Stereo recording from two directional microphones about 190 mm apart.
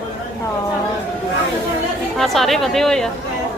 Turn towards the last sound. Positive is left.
turn(degrees=5)  # may be behind; listen again after turning